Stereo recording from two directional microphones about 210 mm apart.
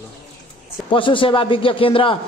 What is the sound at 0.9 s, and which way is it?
A man's voice, 25° left (ahead or behind).